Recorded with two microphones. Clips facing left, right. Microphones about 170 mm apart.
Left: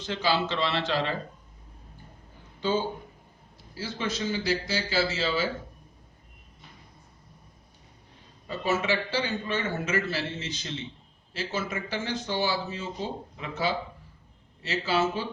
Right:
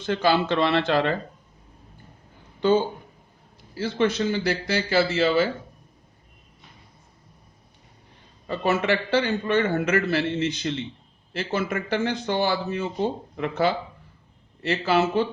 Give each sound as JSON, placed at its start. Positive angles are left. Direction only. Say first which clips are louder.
{"t": 0.0, "sound": "speech", "louder": "right 6 dB", "side_deg": -55}
{"t": 2.6, "sound": "speech", "louder": "right 7 dB", "side_deg": -60}
{"t": 8.4, "sound": "speech", "louder": "right 4 dB", "side_deg": -60}